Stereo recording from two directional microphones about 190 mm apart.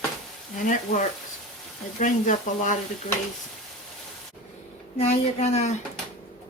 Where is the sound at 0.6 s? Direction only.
40° left (ahead or behind).